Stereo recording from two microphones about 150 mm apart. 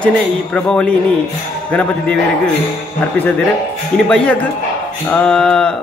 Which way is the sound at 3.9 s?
5° left (ahead or behind).